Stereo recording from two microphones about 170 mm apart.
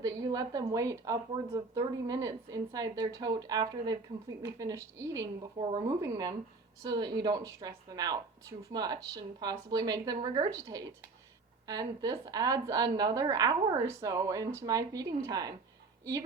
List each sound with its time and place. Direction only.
0.0 s a woman's voice: 20° right (ahead or behind)